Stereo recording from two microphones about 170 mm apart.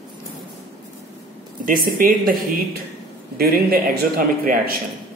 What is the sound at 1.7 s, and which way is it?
Speech, 55° right (ahead or behind).